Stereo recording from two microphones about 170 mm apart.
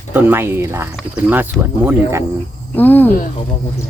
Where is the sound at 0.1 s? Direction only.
10° right (ahead or behind).